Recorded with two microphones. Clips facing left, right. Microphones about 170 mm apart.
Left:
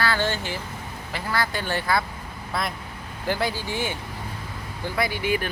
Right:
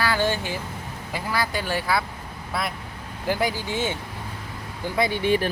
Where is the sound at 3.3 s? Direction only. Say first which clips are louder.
Right 1 dB; 15° right (ahead or behind).